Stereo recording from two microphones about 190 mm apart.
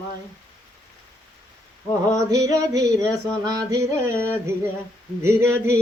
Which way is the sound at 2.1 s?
15° right (ahead or behind).